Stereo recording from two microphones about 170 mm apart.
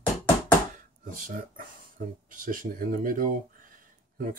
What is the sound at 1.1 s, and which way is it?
Speech, 50° right (ahead or behind).